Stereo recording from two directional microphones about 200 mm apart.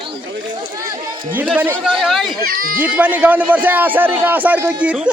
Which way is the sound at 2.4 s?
45° right (ahead or behind).